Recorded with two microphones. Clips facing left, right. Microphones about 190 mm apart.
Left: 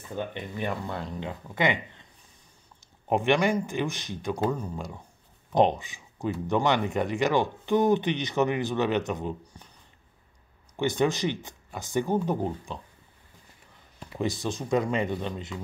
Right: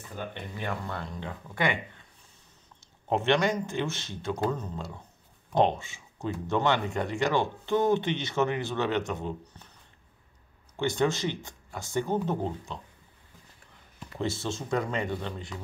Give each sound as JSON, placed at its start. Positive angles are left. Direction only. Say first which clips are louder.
{"t": 0.3, "sound": "speech", "louder": "left 3 dB", "side_deg": 15}
{"t": 3.1, "sound": "speech", "louder": "left 2 dB", "side_deg": 15}
{"t": 10.8, "sound": "speech", "louder": "left 2 dB", "side_deg": 15}
{"t": 14.1, "sound": "speech", "louder": "left 2 dB", "side_deg": 15}